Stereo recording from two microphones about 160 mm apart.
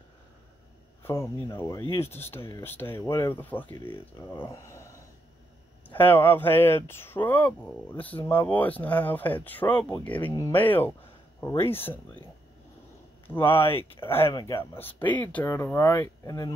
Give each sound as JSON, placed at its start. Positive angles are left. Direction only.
{"t": 1.0, "sound": "speech", "side_deg": 15}
{"t": 5.9, "sound": "speech", "side_deg": 10}
{"t": 13.3, "sound": "speech", "side_deg": 15}